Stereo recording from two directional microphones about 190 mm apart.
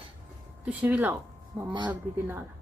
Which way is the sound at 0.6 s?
10° right (ahead or behind).